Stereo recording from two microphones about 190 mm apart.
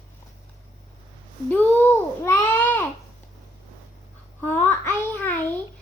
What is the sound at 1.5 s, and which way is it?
A child's voice, 10° left (ahead or behind).